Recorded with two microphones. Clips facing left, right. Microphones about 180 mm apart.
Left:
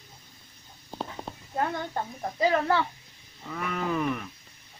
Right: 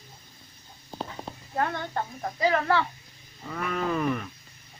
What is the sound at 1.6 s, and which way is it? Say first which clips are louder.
Speech: right 1 dB; 15° left (ahead or behind).